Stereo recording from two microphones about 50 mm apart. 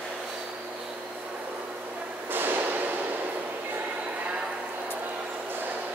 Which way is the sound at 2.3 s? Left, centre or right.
Right.